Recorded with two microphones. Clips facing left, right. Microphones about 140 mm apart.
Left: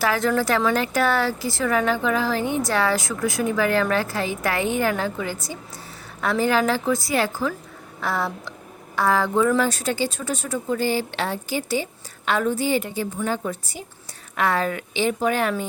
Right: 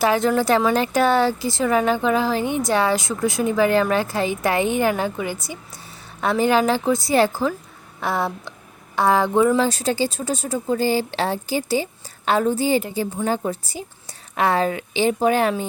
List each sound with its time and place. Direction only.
0.0 s a woman's voice: 20° right (ahead or behind)
8.0 s a woman's voice: 20° right (ahead or behind)